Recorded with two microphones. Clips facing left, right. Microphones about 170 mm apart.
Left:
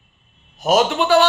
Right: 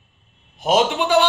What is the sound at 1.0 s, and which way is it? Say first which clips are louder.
Speech: left 2 dB; 15° right (ahead or behind).